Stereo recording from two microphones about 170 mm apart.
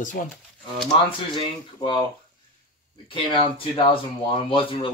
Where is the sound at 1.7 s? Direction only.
25° left (ahead or behind).